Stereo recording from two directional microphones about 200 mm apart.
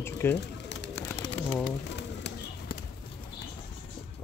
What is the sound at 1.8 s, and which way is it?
Bird, 60° left (ahead or behind).